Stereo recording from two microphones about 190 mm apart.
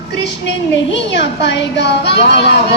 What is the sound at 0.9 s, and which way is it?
A woman's voice, 65° left (ahead or behind).